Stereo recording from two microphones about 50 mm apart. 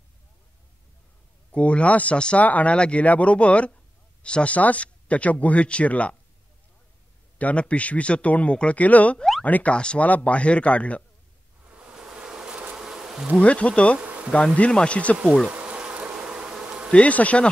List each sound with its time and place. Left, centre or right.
1.5 s speech: left
7.3 s speech: left
11.8 s a sound: centre
12.7 s bee: centre
13.4 s speech: left
14.0 s bee: right
14.6 s speech: left
15.4 s bee: right
16.9 s speech: left